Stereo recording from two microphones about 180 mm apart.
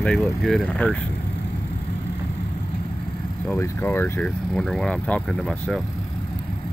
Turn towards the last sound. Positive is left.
turn(degrees=0)  # may be behind; listen again after turning